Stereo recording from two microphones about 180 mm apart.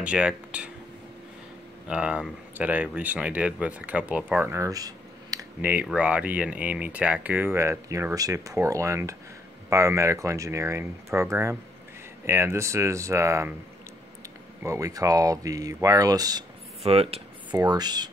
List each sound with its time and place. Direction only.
0.0 s speech: 5° right (ahead or behind)
1.9 s speech: 5° right (ahead or behind)
5.6 s speech: 10° right (ahead or behind)
14.6 s speech: 20° right (ahead or behind)
16.8 s speech: 35° right (ahead or behind)
17.6 s speech: 20° right (ahead or behind)